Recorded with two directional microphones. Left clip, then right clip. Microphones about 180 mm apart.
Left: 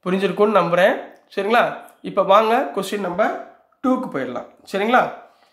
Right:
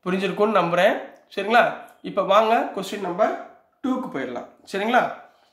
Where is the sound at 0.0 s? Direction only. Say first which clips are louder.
Left 4 dB; 20° left (ahead or behind).